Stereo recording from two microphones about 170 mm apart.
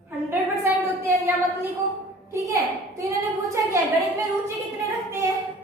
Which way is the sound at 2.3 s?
20° right (ahead or behind).